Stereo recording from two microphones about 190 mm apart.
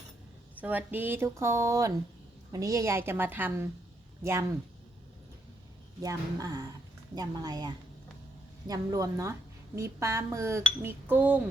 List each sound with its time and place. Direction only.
0.5 s speech: 10° right (ahead or behind)
6.0 s speech: 20° right (ahead or behind)